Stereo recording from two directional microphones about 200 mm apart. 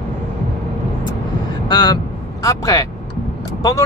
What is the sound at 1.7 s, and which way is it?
Speech, 20° left (ahead or behind).